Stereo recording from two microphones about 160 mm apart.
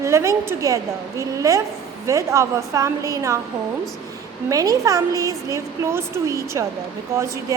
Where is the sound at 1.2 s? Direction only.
20° right (ahead or behind).